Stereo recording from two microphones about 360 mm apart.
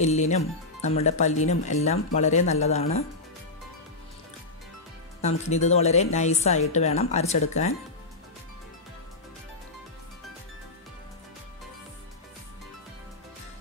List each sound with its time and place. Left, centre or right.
0.0 s speech: centre
5.2 s speech: centre